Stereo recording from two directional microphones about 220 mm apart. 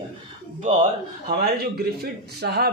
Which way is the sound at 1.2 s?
45° right (ahead or behind).